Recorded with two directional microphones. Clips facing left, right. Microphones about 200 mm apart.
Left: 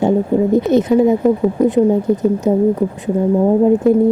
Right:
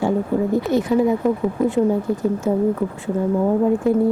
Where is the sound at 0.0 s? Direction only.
20° left (ahead or behind).